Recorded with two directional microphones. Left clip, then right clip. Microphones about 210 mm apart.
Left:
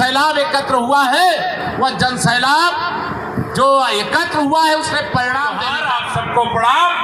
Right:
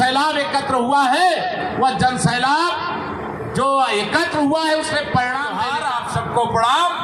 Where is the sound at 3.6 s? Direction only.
35° left (ahead or behind).